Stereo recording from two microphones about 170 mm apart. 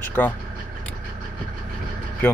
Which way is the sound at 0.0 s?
10° left (ahead or behind).